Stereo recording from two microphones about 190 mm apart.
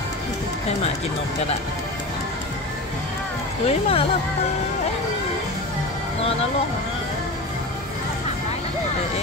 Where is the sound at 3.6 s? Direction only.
30° left (ahead or behind).